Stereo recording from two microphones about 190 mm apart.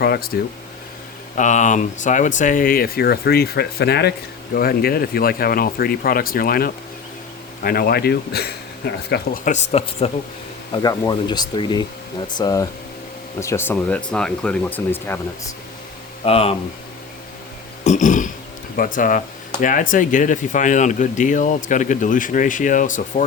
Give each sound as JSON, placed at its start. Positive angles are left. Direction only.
{"t": 0.0, "sound": "speech", "side_deg": 55}
{"t": 1.4, "sound": "speech", "side_deg": 40}
{"t": 9.4, "sound": "speech", "side_deg": 40}
{"t": 10.7, "sound": "speech", "side_deg": 20}
{"t": 16.2, "sound": "speech", "side_deg": 30}
{"t": 17.8, "sound": "throat clearing", "side_deg": 40}
{"t": 18.8, "sound": "speech", "side_deg": 45}